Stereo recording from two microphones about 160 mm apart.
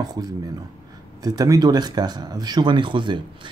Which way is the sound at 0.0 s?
25° right (ahead or behind).